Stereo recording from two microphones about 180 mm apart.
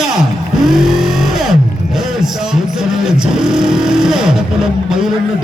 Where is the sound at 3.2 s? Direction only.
5° right (ahead or behind).